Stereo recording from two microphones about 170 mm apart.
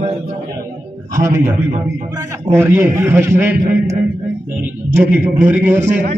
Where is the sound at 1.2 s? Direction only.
15° right (ahead or behind).